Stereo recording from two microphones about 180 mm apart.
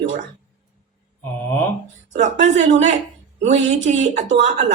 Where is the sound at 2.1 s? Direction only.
40° right (ahead or behind).